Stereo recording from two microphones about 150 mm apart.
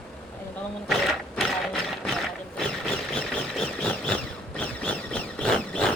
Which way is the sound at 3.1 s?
5° left (ahead or behind).